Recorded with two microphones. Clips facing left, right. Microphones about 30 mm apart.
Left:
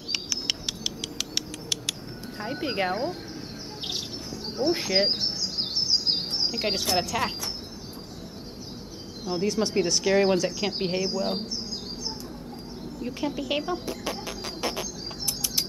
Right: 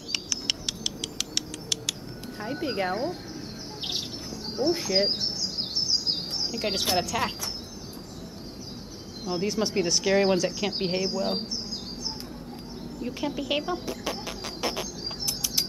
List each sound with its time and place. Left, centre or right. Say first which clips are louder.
0.1 s bird: left 1 dB; centre
2.4 s speech: left 1 dB; centre
4.7 s bird vocalization: left 1 dB; centre
6.3 s a sound: left 3 dB; left
7.0 s speech: even; centre
9.2 s speech: left 1 dB; centre
13.0 s speech: left 1 dB; centre